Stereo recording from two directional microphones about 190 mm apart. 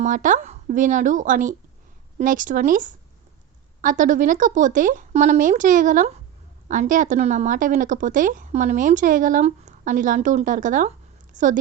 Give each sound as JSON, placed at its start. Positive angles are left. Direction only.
{"t": 0.0, "sound": "a woman's voice", "side_deg": -40}